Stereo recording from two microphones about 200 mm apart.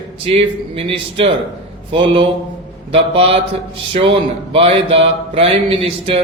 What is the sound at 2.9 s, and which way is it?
Speech, 25° right (ahead or behind).